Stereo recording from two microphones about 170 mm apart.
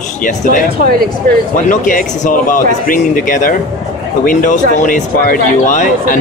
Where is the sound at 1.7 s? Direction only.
50° left (ahead or behind).